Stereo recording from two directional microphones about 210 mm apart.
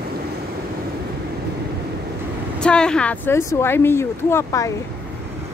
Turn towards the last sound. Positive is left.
turn(degrees=15)  # may be behind; listen again after turning